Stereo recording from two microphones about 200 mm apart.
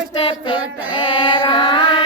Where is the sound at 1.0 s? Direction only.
25° left (ahead or behind).